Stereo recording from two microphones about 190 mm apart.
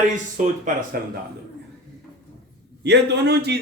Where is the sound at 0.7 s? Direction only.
40° right (ahead or behind).